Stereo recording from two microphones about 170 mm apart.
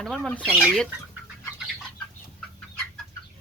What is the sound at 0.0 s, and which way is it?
Speech, 5° left (ahead or behind).